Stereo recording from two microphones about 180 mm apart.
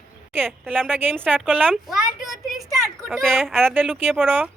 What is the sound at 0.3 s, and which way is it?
A woman's voice, 10° right (ahead or behind).